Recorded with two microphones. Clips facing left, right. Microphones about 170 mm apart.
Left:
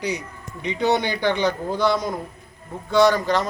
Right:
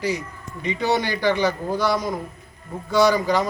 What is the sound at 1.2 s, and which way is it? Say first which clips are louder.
Speech: right 2 dB; 10° right (ahead or behind).